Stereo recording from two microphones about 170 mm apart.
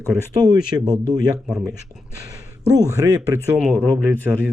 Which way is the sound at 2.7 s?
20° right (ahead or behind).